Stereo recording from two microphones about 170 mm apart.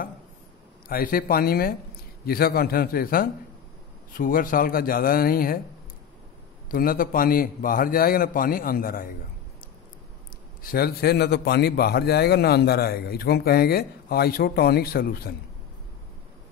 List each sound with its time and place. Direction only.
0.8 s a man's voice: 60° left (ahead or behind)
6.7 s a man's voice: 55° left (ahead or behind)
10.6 s a man's voice: 60° left (ahead or behind)